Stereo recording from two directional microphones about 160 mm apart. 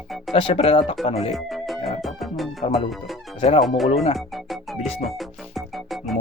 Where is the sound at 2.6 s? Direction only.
35° left (ahead or behind).